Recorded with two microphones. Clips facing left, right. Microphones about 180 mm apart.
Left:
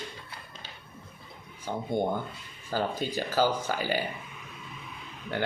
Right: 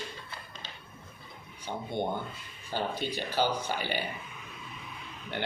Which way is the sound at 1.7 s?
45° left (ahead or behind).